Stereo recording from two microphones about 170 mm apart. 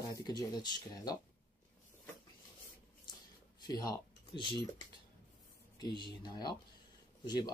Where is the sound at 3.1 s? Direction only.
25° left (ahead or behind).